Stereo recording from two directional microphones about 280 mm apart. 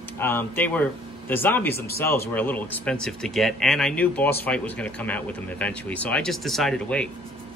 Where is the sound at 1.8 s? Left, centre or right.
Left.